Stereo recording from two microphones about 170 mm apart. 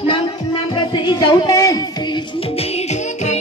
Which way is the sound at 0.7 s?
25° left (ahead or behind).